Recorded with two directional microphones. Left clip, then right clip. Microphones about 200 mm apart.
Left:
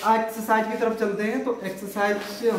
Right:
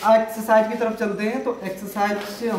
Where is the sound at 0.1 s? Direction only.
15° right (ahead or behind).